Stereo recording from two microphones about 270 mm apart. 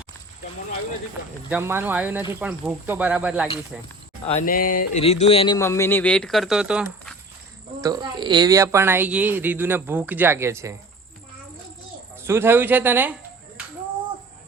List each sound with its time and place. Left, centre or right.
1.5 s speech: centre
4.3 s speech: left; by 10.8 s centre
12.2 s speech: centre